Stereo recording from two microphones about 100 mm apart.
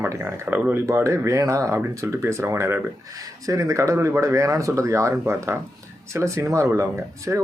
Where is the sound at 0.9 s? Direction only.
30° right (ahead or behind).